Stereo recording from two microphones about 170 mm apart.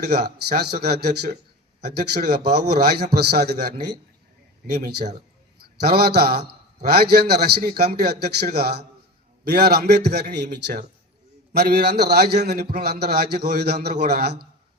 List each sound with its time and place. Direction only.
0.4 s a man's voice: 70° right (ahead or behind)
5.5 s a man's voice: 65° right (ahead or behind)